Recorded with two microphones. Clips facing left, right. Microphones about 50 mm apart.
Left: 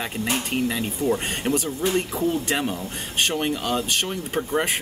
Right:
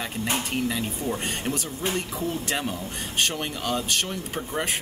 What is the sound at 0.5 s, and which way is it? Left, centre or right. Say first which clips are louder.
Speech: left 2 dB; centre.